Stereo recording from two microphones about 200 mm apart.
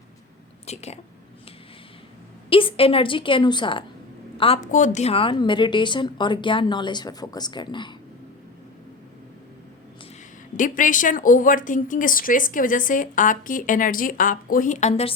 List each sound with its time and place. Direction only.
0.7 s a woman's voice: 30° left (ahead or behind)
2.5 s a woman's voice: 25° left (ahead or behind)
10.6 s a woman's voice: 40° left (ahead or behind)